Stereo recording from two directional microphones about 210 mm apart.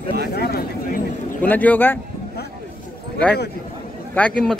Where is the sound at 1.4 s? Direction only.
10° left (ahead or behind).